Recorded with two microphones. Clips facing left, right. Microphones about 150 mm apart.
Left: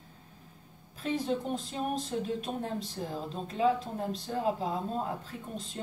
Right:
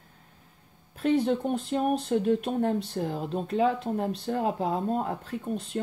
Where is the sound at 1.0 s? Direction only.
60° right (ahead or behind).